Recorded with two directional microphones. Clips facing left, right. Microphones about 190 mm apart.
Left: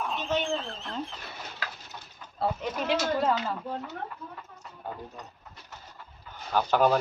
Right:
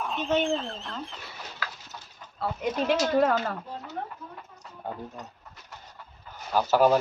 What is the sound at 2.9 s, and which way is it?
Speech, 55° right (ahead or behind).